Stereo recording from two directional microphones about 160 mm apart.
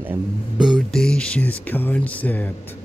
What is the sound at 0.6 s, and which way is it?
Speech, centre (ahead or behind).